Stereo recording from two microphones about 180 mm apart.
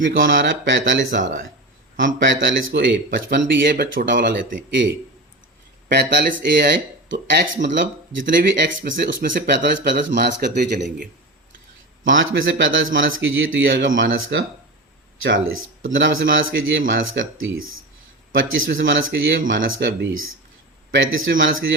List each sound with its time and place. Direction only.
0.0 s a man's voice: 90° right
3.7 s speech: 50° right (ahead or behind)
5.9 s speech: 70° right (ahead or behind); by 8.2 s 85° right
8.5 s speech: 70° right (ahead or behind)
9.0 s speech: 80° right
10.1 s speech: 70° right (ahead or behind)
12.0 s a man's voice: 90° right